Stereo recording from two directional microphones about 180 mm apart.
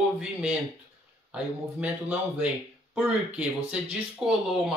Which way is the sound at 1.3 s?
5° right (ahead or behind).